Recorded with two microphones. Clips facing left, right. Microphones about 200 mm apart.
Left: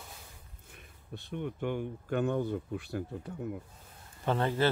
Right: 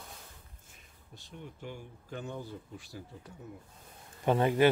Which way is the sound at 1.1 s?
60° left (ahead or behind).